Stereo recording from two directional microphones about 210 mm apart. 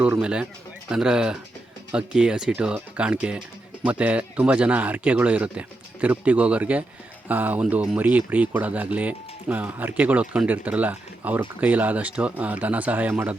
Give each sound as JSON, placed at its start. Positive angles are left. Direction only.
{"t": 0.0, "sound": "speech", "side_deg": -5}